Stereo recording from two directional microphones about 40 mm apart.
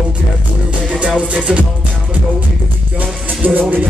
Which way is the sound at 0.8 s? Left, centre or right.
Right.